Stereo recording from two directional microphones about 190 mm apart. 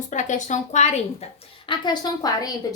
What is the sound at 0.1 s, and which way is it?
Speech, 40° left (ahead or behind).